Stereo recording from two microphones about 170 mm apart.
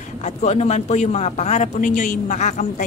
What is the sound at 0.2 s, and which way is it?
A woman's voice, 40° left (ahead or behind).